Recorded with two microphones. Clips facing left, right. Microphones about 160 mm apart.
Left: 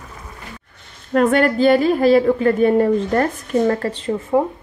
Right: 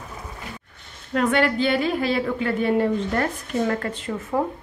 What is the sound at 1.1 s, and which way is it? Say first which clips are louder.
A woman's voice: left 5 dB; 45° left (ahead or behind).